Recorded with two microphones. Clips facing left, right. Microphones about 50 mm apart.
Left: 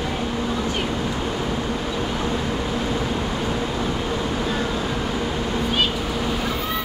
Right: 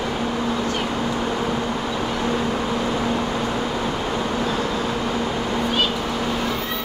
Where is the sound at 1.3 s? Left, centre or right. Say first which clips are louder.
Right 2 dB; centre.